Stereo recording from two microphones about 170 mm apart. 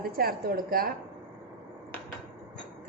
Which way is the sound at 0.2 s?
60° right (ahead or behind).